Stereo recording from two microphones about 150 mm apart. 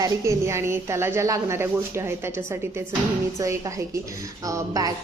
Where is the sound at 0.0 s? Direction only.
20° right (ahead or behind).